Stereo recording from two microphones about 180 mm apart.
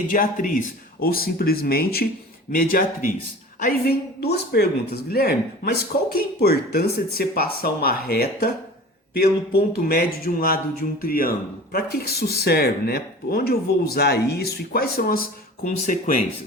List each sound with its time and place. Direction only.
0.1 s speech: 50° left (ahead or behind)